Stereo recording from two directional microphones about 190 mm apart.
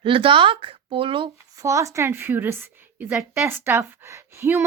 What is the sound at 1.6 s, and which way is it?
A woman's voice, 15° right (ahead or behind).